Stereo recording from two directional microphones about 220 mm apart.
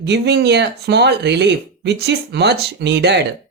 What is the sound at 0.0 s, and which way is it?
Speech, 50° right (ahead or behind).